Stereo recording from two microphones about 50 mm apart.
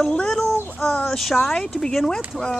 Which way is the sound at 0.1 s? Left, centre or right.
Centre.